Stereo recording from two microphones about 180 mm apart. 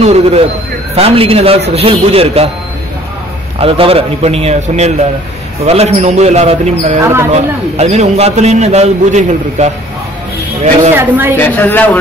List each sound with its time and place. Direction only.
0.0 s a man's voice: 35° right (ahead or behind)
3.5 s a man's voice: 30° right (ahead or behind)
7.0 s a woman's voice: 15° right (ahead or behind)
7.3 s a man's voice: 40° right (ahead or behind)
11.0 s a woman's voice: 10° right (ahead or behind)
11.3 s speech: 10° left (ahead or behind)